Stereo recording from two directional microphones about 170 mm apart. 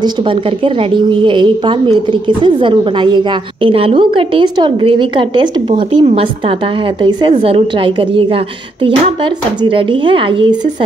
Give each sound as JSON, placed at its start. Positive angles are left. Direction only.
{"t": 0.9, "sound": "a woman's voice", "side_deg": -25}
{"t": 9.6, "sound": "a woman's voice", "side_deg": -30}